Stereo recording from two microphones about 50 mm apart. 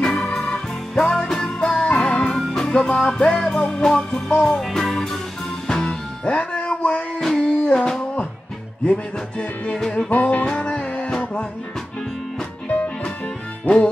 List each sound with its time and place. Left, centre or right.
0.0 s music: centre
7.2 s a sound: centre
7.5 s a sound: centre
8.8 s music: left
10.0 s music: left
10.4 s music: centre